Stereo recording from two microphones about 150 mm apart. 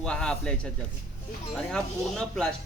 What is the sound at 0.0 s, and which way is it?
Speech, 5° left (ahead or behind).